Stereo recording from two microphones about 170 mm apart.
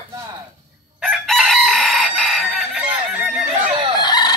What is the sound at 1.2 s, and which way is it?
Chicken, centre (ahead or behind).